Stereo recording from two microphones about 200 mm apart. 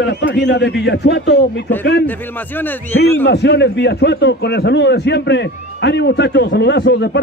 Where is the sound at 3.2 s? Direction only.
60° left (ahead or behind).